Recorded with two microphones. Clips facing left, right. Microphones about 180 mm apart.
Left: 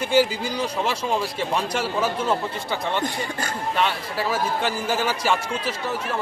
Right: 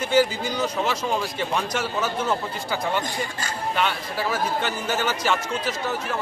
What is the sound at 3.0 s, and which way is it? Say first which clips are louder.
Speech: left 2 dB; 55° left (ahead or behind).